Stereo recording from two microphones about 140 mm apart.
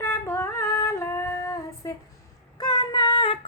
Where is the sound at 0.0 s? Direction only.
20° left (ahead or behind).